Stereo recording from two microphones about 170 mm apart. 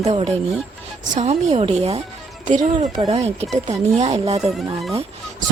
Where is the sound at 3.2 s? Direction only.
40° right (ahead or behind).